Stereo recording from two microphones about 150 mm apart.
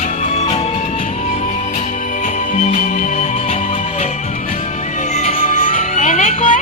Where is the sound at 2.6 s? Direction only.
50° left (ahead or behind).